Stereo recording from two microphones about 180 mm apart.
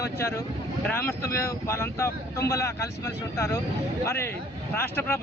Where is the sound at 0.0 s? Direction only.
15° left (ahead or behind).